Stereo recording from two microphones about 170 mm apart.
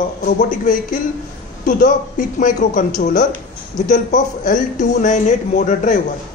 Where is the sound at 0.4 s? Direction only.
50° left (ahead or behind).